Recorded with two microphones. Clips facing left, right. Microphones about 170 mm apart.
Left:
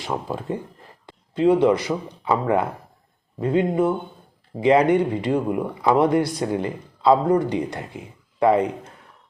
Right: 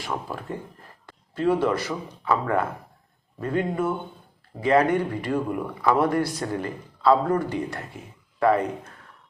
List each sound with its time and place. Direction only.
0.0 s speech: 20° left (ahead or behind)
1.0 s a sound: 20° left (ahead or behind)
1.6 s a man's voice: 15° left (ahead or behind)